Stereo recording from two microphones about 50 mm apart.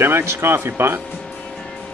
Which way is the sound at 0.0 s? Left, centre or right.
Right.